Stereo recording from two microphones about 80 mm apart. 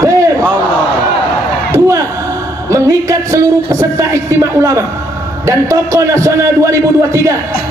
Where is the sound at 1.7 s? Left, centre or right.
Right.